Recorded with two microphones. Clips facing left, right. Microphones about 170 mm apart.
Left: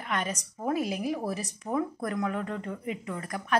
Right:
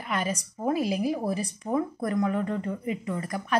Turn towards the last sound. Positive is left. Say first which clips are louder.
# right 4 dB
turn(degrees=0)  # may be behind; listen again after turning